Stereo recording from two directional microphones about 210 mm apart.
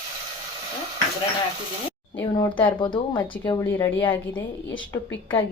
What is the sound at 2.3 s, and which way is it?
A woman's voice, 20° left (ahead or behind).